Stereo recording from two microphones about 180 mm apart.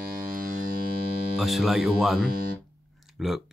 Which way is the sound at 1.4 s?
Centre (ahead or behind).